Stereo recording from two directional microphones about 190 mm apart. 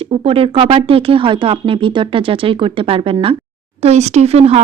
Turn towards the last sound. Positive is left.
turn(degrees=-35)  # may be behind; listen again after turning